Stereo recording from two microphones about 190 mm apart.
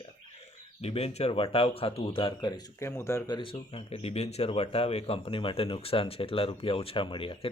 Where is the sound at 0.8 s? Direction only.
30° left (ahead or behind).